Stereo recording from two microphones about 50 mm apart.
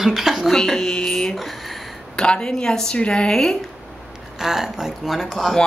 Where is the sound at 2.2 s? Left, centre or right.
Centre.